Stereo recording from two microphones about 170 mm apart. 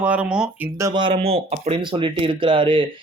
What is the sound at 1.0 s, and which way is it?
Speech, 35° right (ahead or behind).